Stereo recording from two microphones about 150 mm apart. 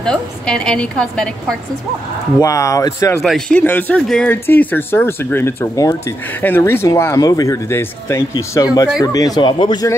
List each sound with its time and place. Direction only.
0.0 s a woman's voice: 5° left (ahead or behind)
2.4 s speech: 20° left (ahead or behind)
3.2 s speech: 5° left (ahead or behind); by 9.8 s 30° left (ahead or behind)